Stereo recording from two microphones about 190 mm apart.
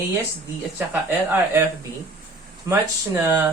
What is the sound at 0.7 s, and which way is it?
Speech, 10° right (ahead or behind).